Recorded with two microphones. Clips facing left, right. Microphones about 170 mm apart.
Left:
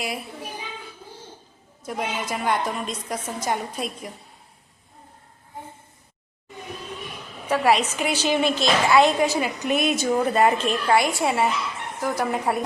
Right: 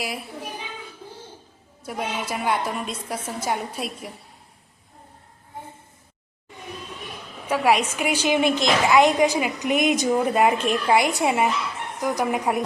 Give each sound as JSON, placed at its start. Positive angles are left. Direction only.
{"t": 1.8, "sound": "a woman's voice", "side_deg": -10}
{"t": 7.5, "sound": "a woman's voice", "side_deg": -10}